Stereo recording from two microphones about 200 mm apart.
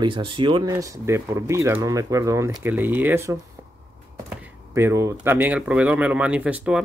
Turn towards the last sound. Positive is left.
turn(degrees=-5)  # may be behind; listen again after turning